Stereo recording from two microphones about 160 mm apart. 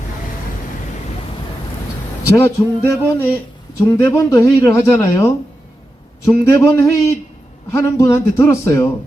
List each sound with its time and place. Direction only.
2.2 s a man's voice: 15° left (ahead or behind)